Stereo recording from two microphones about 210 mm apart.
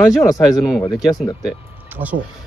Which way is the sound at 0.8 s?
20° left (ahead or behind).